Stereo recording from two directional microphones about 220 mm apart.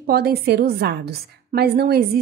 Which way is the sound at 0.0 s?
45° right (ahead or behind).